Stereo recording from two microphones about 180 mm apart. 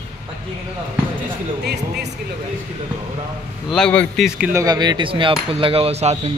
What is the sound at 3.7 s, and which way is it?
Speech, 5° left (ahead or behind).